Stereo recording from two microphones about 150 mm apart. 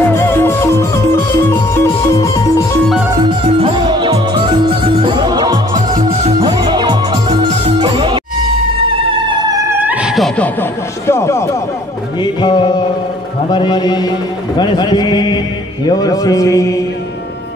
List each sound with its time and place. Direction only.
0.1 s music: 15° left (ahead or behind)
3.2 s music: 35° right (ahead or behind)
5.8 s music: 55° right (ahead or behind)
6.4 s music: 30° right (ahead or behind)
9.3 s opera: 25° right (ahead or behind); by 11.5 s 20° left (ahead or behind)
12.2 s music: 30° left (ahead or behind)